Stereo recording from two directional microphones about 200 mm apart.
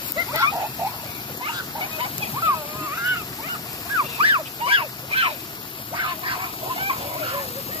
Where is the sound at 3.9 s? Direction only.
25° right (ahead or behind).